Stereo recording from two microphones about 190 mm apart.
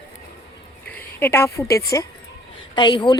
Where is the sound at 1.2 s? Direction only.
10° left (ahead or behind).